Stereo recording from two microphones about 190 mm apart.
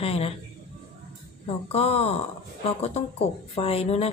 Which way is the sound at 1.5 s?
30° left (ahead or behind).